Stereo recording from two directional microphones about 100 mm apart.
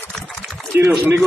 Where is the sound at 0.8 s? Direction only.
25° right (ahead or behind).